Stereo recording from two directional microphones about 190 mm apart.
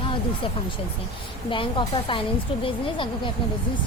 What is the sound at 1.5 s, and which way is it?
A woman's voice, 25° left (ahead or behind).